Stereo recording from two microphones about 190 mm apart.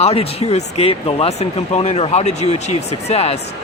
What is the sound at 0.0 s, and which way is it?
Speech, 30° left (ahead or behind).